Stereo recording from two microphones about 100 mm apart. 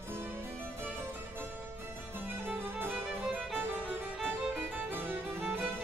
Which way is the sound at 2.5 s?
20° right (ahead or behind).